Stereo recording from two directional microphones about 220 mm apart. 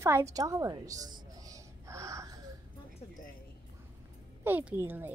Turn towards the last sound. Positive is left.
turn(degrees=-10)  # may be behind; listen again after turning